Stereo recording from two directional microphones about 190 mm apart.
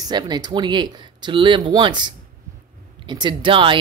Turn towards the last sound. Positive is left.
turn(degrees=-25)  # may be behind; listen again after turning